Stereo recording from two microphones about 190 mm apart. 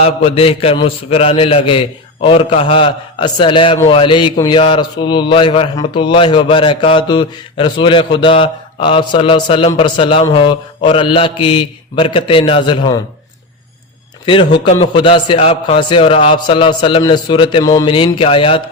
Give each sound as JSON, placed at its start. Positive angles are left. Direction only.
{"t": 0.0, "sound": "a man's voice", "side_deg": 30}
{"t": 14.7, "sound": "a man's voice", "side_deg": 30}